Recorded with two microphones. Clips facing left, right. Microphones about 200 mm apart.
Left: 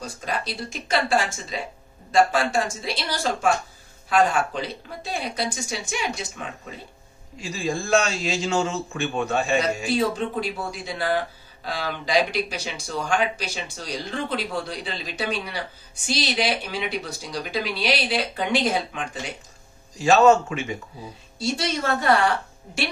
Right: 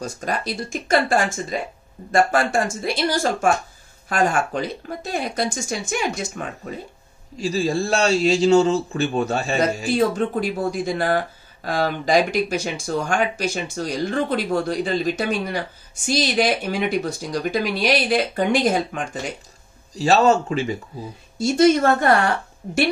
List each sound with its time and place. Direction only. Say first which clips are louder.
0.0 s speech: right 4 dB; 45° right (ahead or behind)
7.3 s a man's voice: right 6 dB; 35° right (ahead or behind)
9.9 s speech: right 5 dB; 50° right (ahead or behind)
20.0 s a man's voice: even; 35° right (ahead or behind)
21.4 s speech: right 11 dB; 50° right (ahead or behind)